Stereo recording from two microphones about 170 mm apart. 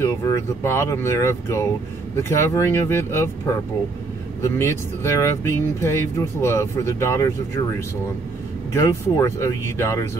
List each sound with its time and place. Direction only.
0.0 s speech: 15° left (ahead or behind)
8.7 s speech: 15° left (ahead or behind)